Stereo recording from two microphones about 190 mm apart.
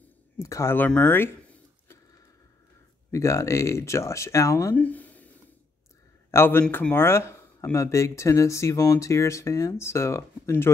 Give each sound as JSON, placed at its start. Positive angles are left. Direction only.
{"t": 0.4, "sound": "speech", "side_deg": 15}
{"t": 3.1, "sound": "speech", "side_deg": 15}
{"t": 6.3, "sound": "speech", "side_deg": 10}